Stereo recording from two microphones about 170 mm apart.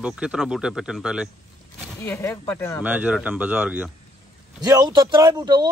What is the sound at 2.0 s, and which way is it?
Speech, 15° left (ahead or behind).